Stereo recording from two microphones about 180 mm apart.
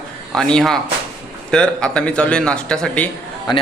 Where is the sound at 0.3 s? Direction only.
5° left (ahead or behind).